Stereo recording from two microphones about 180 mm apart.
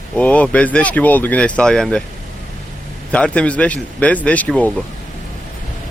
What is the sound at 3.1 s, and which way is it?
Speech, 5° left (ahead or behind).